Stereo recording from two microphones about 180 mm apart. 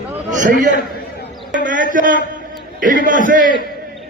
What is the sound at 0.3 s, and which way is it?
Speech, 45° right (ahead or behind).